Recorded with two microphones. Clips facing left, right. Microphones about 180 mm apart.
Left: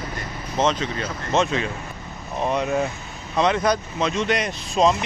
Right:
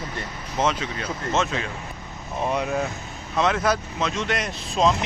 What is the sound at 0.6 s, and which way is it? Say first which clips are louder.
Speech: left 2 dB; 10° right (ahead or behind).